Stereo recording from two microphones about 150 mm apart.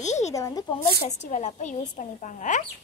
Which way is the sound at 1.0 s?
50° left (ahead or behind).